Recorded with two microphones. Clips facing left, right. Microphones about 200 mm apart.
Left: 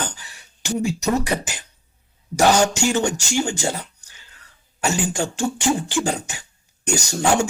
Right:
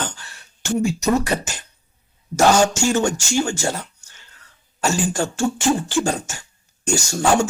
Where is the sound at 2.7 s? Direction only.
15° left (ahead or behind).